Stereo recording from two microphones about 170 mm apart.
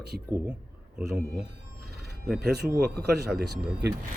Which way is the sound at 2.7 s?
65° right (ahead or behind).